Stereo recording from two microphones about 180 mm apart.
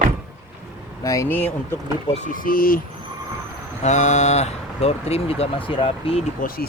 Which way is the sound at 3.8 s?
40° left (ahead or behind).